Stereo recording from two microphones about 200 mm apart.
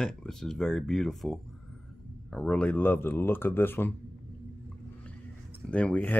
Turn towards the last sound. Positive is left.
turn(degrees=5)  # may be behind; listen again after turning